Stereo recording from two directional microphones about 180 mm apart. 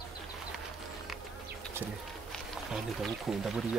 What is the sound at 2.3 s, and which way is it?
Speech, centre (ahead or behind).